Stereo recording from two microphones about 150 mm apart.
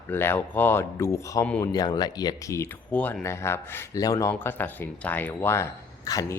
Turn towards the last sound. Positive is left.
turn(degrees=25)  # may be behind; listen again after turning